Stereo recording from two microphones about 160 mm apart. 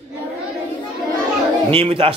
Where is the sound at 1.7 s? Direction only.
35° right (ahead or behind).